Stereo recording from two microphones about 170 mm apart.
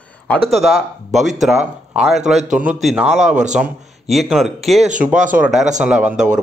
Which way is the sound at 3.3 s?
45° right (ahead or behind).